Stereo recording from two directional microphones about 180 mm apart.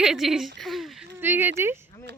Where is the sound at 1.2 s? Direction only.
10° right (ahead or behind).